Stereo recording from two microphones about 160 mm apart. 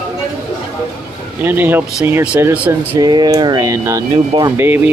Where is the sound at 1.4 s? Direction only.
10° right (ahead or behind).